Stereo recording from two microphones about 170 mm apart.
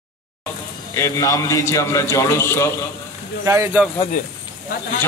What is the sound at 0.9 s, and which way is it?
A man's voice, 20° left (ahead or behind).